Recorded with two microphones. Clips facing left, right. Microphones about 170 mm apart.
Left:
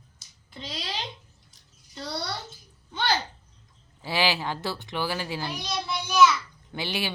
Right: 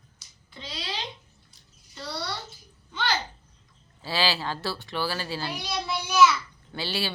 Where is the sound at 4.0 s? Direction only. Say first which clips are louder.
Left 1 dB; 15° left (ahead or behind).